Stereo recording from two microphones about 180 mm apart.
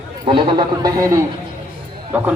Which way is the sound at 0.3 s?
30° right (ahead or behind).